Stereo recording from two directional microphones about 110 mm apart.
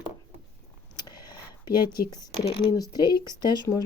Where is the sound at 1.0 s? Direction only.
40° left (ahead or behind).